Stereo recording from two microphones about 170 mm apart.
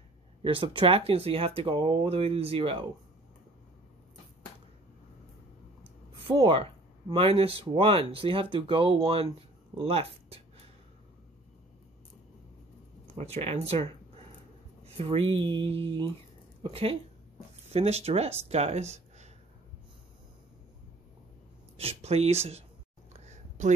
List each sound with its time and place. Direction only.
0.4 s speech: 30° right (ahead or behind)
6.1 s speech: 30° right (ahead or behind)
13.2 s speech: 35° right (ahead or behind)
15.0 s speech: 35° right (ahead or behind)
21.7 s speech: 35° right (ahead or behind)
23.2 s a sound: 45° right (ahead or behind)